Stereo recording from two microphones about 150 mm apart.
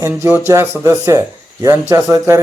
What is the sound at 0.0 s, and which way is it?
Speech, 15° right (ahead or behind).